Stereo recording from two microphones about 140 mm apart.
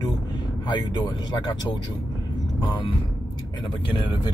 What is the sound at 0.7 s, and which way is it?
Speech, 30° left (ahead or behind).